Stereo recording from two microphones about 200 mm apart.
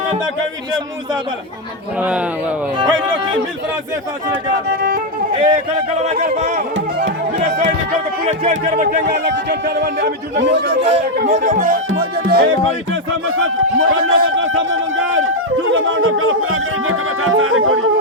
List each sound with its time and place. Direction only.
2.0 s a man's voice: 5° right (ahead or behind)
4.7 s speech: 50° right (ahead or behind)
5.3 s a man's voice: 25° right (ahead or behind)
8.3 s speech: 45° right (ahead or behind)
11.4 s music: 40° right (ahead or behind)
11.9 s music: 55° right (ahead or behind)
13.3 s speech: 90° right